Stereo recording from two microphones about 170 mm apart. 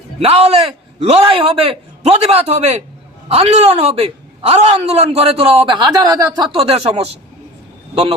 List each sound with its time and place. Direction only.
0.2 s a man's voice: 35° right (ahead or behind)